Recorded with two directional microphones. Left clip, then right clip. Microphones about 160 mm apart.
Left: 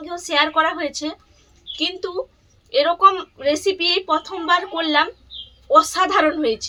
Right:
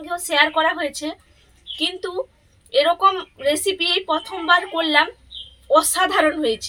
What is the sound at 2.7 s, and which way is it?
A woman's voice, 10° left (ahead or behind).